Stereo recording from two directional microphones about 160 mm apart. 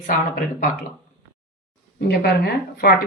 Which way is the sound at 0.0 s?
55° left (ahead or behind).